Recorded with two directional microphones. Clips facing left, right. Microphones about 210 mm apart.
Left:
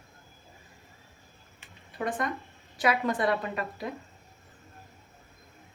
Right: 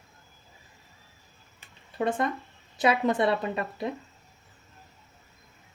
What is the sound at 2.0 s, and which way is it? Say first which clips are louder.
Speech: right 4 dB; 25° right (ahead or behind).